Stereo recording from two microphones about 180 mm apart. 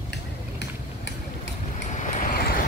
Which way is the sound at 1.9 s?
45° left (ahead or behind).